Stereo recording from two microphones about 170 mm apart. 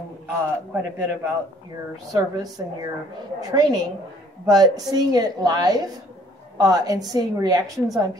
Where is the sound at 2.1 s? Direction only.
20° right (ahead or behind).